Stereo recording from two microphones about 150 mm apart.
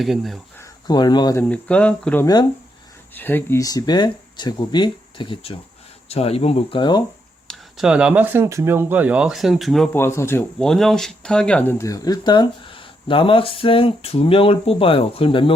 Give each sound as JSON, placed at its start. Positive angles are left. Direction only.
{"t": 0.0, "sound": "speech", "side_deg": 0}
{"t": 0.9, "sound": "speech", "side_deg": 30}
{"t": 1.4, "sound": "speech", "side_deg": 10}
{"t": 2.2, "sound": "speech", "side_deg": 25}
{"t": 3.2, "sound": "speech", "side_deg": 15}
{"t": 7.4, "sound": "speech", "side_deg": -5}
{"t": 9.9, "sound": "speech", "side_deg": 15}
{"t": 10.6, "sound": "speech", "side_deg": 5}